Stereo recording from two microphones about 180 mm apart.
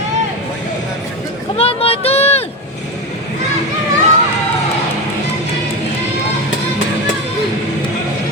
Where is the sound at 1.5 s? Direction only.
30° left (ahead or behind).